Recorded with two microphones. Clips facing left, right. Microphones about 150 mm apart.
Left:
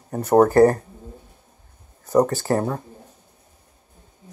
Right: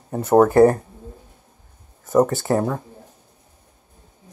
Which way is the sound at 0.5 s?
15° right (ahead or behind).